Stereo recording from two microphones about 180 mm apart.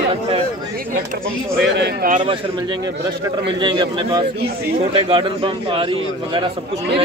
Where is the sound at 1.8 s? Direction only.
65° right (ahead or behind).